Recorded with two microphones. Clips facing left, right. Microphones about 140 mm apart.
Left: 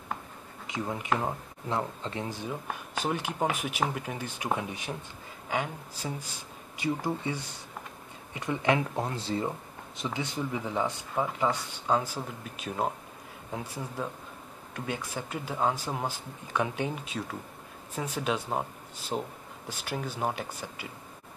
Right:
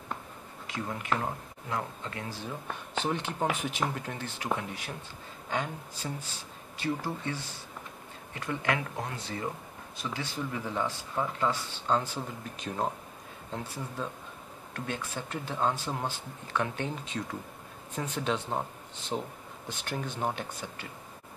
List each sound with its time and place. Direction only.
0.7 s speech: 20° left (ahead or behind)
5.5 s speech: 10° left (ahead or behind)